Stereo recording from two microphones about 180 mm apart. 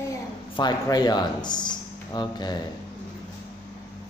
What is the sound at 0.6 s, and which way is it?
A man's voice, 20° left (ahead or behind).